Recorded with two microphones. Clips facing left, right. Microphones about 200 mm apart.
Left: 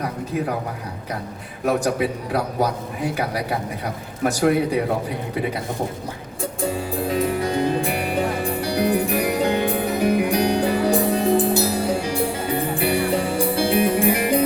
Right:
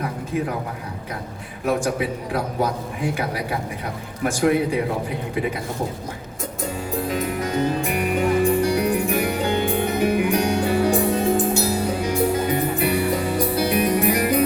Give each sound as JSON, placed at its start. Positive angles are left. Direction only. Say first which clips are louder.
{"t": 4.2, "sound": "a man's voice", "louder": "left 1 dB", "side_deg": 40}
{"t": 7.1, "sound": "music", "louder": "left 5 dB", "side_deg": 30}